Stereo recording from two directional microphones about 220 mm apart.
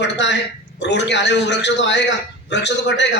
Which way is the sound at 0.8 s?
50° left (ahead or behind).